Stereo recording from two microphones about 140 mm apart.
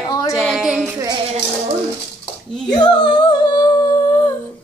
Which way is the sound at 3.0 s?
35° left (ahead or behind).